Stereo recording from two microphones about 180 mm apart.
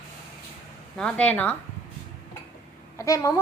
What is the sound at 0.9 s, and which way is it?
Speech, 5° left (ahead or behind).